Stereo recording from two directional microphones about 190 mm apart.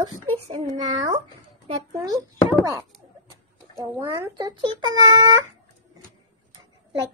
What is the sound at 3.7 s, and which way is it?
Speech, 15° right (ahead or behind).